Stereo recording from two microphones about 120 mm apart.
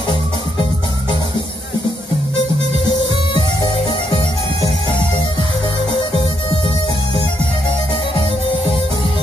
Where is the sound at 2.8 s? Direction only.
40° left (ahead or behind).